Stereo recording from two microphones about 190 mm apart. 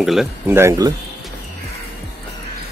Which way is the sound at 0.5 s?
15° right (ahead or behind).